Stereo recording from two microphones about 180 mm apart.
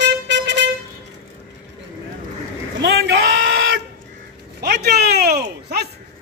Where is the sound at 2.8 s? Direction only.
65° right (ahead or behind).